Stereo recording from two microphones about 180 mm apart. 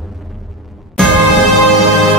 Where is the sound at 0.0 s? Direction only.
Centre (ahead or behind).